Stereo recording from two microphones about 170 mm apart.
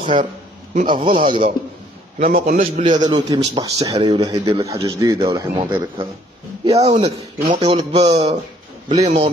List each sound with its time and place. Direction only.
0.0 s a man's voice: 30° right (ahead or behind)
2.1 s a man's voice: 50° right (ahead or behind); by 5.7 s 25° right (ahead or behind)
6.7 s speech: 40° right (ahead or behind)